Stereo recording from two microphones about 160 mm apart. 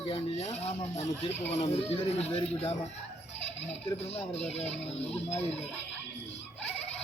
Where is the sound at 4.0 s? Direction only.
40° left (ahead or behind).